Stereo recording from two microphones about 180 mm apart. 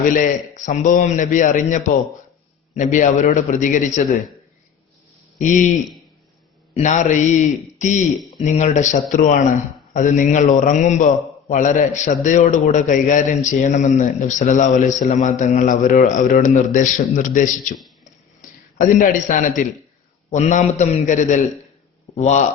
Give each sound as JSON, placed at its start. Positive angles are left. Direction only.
{"t": 0.0, "sound": "a man's voice", "side_deg": 45}
{"t": 5.4, "sound": "a man's voice", "side_deg": 45}
{"t": 6.7, "sound": "a man's voice", "side_deg": 45}
{"t": 17.7, "sound": "a sound", "side_deg": 0}
{"t": 18.8, "sound": "a man's voice", "side_deg": 50}